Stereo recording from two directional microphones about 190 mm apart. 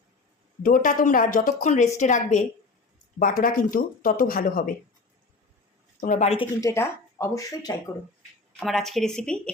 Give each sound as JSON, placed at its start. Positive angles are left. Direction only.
{"t": 0.6, "sound": "a woman's voice", "side_deg": 45}
{"t": 6.0, "sound": "a woman's voice", "side_deg": 40}
{"t": 6.6, "sound": "speech", "side_deg": 15}
{"t": 8.5, "sound": "speech", "side_deg": 0}